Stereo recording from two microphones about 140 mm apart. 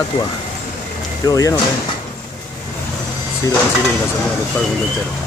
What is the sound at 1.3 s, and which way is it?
Speech, 25° left (ahead or behind).